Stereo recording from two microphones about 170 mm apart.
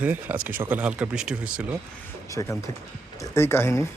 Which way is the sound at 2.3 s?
20° left (ahead or behind).